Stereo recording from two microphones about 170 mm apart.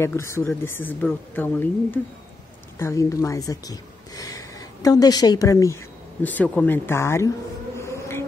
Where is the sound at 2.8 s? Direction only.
15° left (ahead or behind).